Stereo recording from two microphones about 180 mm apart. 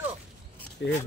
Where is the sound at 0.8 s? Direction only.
80° left.